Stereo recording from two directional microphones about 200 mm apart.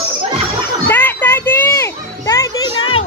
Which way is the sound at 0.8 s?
10° left (ahead or behind).